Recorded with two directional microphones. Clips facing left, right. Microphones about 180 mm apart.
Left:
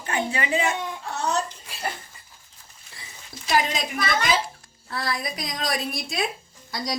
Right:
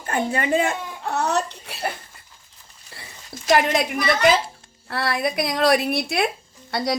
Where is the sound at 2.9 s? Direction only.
65° right (ahead or behind).